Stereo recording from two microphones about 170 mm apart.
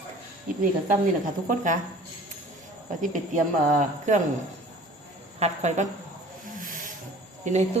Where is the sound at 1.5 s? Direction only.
50° right (ahead or behind).